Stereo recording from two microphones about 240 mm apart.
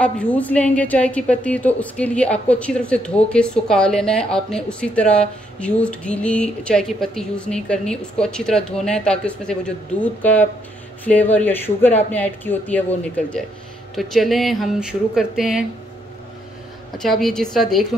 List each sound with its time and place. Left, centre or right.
0.0 s speech: centre
17.0 s speech: centre